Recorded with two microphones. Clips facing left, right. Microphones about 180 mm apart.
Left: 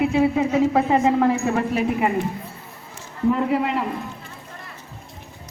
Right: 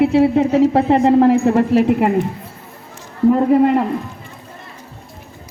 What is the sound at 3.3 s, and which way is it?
Speech, 45° right (ahead or behind).